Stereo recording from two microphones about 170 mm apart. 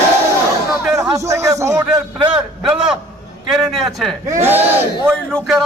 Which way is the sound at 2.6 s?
5° right (ahead or behind).